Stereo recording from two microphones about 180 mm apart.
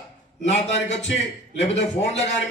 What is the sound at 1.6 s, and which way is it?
Speech, 35° left (ahead or behind).